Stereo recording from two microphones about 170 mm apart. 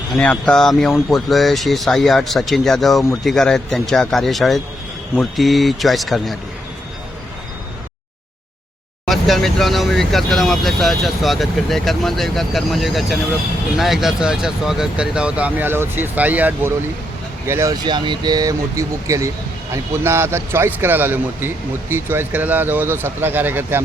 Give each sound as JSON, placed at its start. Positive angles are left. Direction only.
{"t": 0.1, "sound": "speech", "side_deg": 5}
{"t": 9.0, "sound": "a man's voice", "side_deg": 0}